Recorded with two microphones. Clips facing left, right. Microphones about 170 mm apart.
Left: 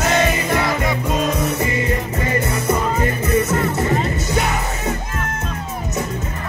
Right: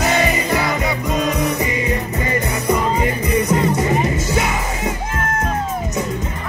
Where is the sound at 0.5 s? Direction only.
Centre (ahead or behind).